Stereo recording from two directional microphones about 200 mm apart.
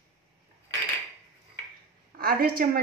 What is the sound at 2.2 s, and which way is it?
Speech, 50° right (ahead or behind).